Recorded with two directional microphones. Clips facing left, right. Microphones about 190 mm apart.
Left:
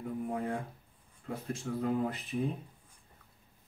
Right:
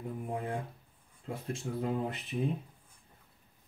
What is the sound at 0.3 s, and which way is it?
Speech, 25° right (ahead or behind).